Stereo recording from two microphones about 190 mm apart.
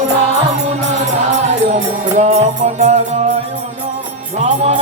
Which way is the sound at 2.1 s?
35° right (ahead or behind).